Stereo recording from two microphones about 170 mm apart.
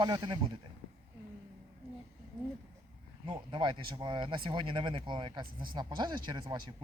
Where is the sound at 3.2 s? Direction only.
30° right (ahead or behind).